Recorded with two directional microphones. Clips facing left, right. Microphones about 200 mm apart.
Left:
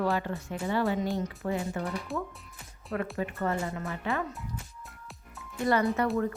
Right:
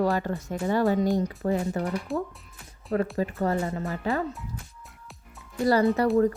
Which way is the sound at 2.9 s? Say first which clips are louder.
Right 6 dB; 35° right (ahead or behind).